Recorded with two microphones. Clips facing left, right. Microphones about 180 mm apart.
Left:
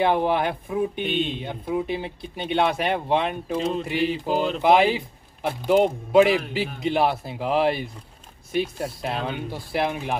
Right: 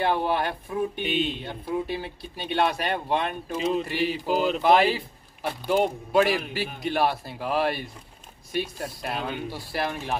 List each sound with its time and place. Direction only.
0.0 s speech: 20° left (ahead or behind)
4.0 s speech: 5° right (ahead or behind)
4.6 s speech: 20° left (ahead or behind)